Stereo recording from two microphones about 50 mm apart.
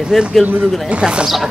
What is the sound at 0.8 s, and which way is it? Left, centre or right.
Speech, right.